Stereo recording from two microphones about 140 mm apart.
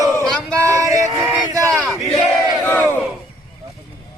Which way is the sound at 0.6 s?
20° right (ahead or behind).